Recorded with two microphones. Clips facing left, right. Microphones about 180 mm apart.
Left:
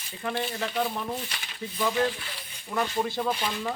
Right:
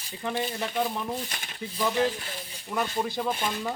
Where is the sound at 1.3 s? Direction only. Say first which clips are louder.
Right 1 dB; 50° right (ahead or behind).